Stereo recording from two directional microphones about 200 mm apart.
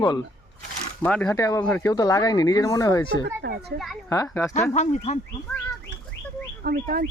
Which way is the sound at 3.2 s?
55° right (ahead or behind).